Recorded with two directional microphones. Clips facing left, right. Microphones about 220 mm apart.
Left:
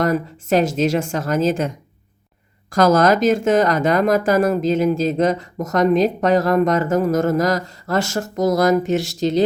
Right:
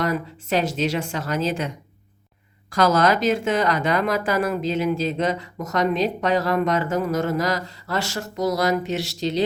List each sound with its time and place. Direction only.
0.0 s a woman's voice: 45° left (ahead or behind)